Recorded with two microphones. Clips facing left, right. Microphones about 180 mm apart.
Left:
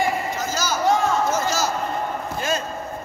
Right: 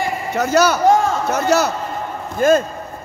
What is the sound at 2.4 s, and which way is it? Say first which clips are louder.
Speech: right 13 dB; 50° right (ahead or behind).